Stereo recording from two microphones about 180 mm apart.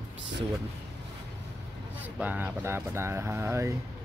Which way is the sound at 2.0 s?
10° right (ahead or behind).